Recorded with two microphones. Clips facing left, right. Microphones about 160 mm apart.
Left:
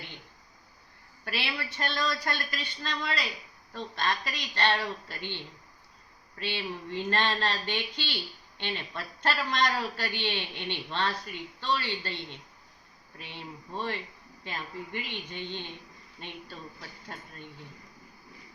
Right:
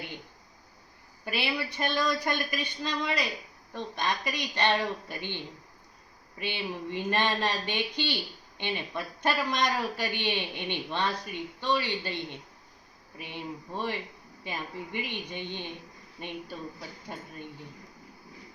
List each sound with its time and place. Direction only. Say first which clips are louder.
1.2 s speech: right 4 dB; 15° right (ahead or behind)